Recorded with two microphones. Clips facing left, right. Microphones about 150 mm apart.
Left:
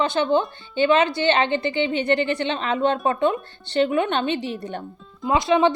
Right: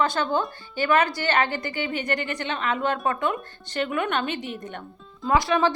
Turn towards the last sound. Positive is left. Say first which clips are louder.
# left 3 dB
turn(degrees=20)  # may be behind; listen again after turning